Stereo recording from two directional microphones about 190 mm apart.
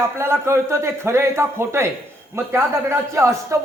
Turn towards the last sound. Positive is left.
turn(degrees=-15)  # may be behind; listen again after turning